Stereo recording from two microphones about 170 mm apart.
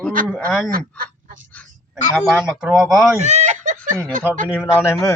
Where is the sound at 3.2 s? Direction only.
45° right (ahead or behind).